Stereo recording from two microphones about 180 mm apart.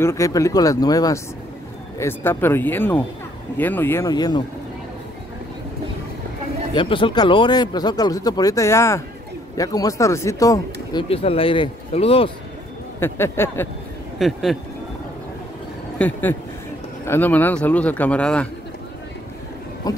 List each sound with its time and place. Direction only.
0.0 s speech: 15° left (ahead or behind)
6.7 s speech: 25° left (ahead or behind)
13.0 s speech: 15° left (ahead or behind)
14.1 s speech: centre (ahead or behind)
16.0 s speech: 10° left (ahead or behind)
19.8 s speech: 20° left (ahead or behind)